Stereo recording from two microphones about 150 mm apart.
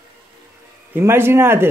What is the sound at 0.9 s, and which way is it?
Speech, 15° right (ahead or behind).